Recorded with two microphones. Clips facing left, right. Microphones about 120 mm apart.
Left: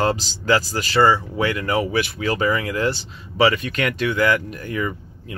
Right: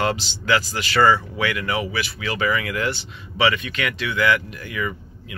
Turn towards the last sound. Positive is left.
turn(degrees=40)  # may be behind; listen again after turning